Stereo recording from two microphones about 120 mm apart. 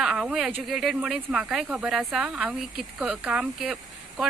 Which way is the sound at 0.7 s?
Centre (ahead or behind).